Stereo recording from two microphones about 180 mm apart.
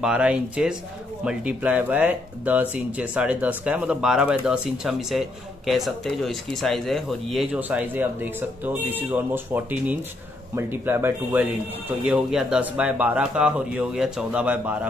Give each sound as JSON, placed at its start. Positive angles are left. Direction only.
{"t": 0.0, "sound": "speech", "side_deg": -5}